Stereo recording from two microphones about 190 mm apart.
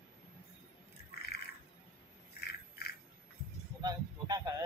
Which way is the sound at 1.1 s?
55° left (ahead or behind).